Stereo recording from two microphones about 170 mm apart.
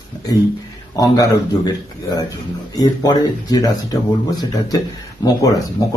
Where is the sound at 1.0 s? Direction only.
20° left (ahead or behind).